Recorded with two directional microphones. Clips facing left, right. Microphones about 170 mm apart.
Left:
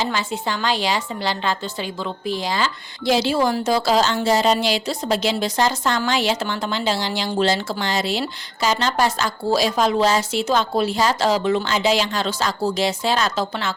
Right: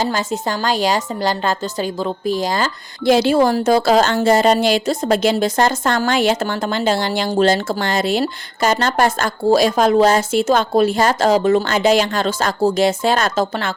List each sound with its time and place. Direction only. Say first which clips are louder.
0.0 s a woman's voice: right 4 dB; 45° right (ahead or behind)